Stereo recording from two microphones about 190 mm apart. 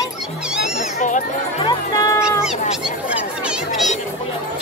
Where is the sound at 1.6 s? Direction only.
20° left (ahead or behind).